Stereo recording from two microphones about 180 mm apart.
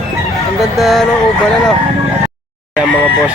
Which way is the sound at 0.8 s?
Centre (ahead or behind).